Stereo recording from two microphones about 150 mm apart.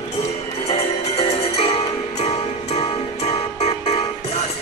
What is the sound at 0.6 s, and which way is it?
Music, 40° left (ahead or behind).